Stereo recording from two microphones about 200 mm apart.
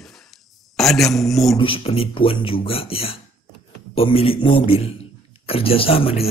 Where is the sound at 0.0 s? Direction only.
Centre (ahead or behind).